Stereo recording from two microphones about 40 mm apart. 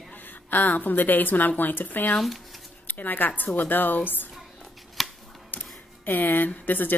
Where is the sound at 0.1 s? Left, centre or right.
Left.